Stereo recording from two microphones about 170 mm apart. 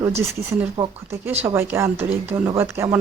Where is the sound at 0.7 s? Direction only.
30° right (ahead or behind).